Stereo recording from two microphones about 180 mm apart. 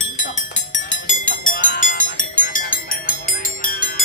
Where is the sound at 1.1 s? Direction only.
45° left (ahead or behind).